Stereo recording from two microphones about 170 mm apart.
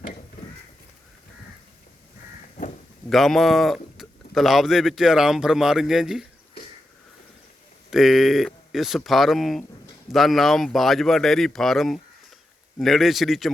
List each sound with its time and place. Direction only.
3.1 s speech: centre (ahead or behind)
7.9 s speech: centre (ahead or behind)